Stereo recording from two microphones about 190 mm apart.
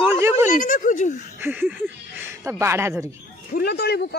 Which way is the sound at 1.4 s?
10° right (ahead or behind).